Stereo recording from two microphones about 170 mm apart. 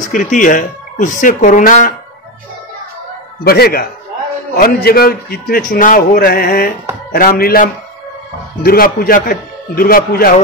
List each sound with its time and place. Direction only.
0.0 s speech: 50° left (ahead or behind)
3.4 s a man's voice: 65° left (ahead or behind)